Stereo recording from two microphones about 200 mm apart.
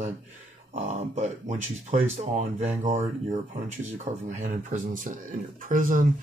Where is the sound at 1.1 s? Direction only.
35° right (ahead or behind).